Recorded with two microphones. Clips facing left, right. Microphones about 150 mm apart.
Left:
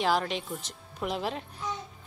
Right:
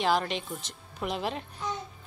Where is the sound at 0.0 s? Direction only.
Centre (ahead or behind).